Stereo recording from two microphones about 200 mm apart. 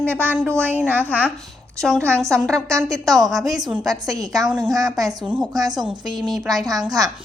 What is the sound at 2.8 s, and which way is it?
Speech, 15° right (ahead or behind).